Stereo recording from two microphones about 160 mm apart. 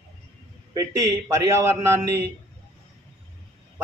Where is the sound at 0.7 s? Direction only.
20° right (ahead or behind).